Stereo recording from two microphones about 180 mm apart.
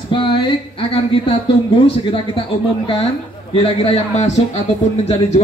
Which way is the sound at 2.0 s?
30° left (ahead or behind).